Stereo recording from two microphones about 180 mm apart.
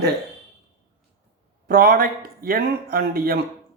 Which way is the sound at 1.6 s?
55° right (ahead or behind).